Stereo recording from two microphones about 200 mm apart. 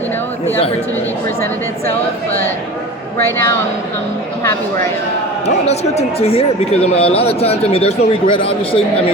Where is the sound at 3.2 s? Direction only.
10° left (ahead or behind).